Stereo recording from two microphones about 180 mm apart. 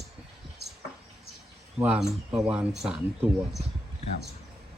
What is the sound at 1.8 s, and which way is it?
Speech, 5° right (ahead or behind).